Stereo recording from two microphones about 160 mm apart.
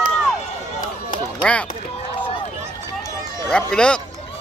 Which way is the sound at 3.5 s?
5° left (ahead or behind).